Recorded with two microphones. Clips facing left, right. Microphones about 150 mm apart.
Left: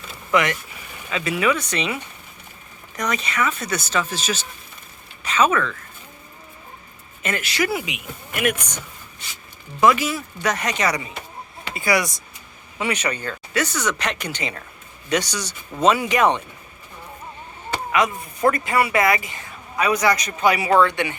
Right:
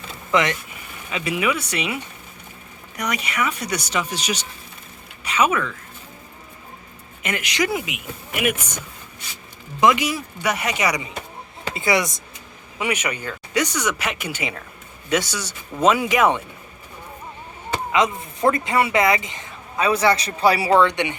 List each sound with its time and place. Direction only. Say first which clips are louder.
0.3 s speech: even; 20° right (ahead or behind)
7.2 s speech: even; 15° right (ahead or behind)
8.3 s speech: even; 5° right (ahead or behind)
9.8 s speech: even; 15° right (ahead or behind)
12.8 s speech: even; 10° right (ahead or behind)
17.9 s speech: right 1 dB; 20° right (ahead or behind)